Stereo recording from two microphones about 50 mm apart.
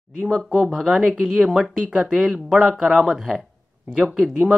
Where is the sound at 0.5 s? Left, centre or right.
Centre.